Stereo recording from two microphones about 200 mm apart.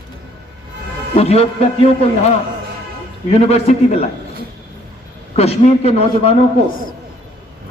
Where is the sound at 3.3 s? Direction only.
30° left (ahead or behind).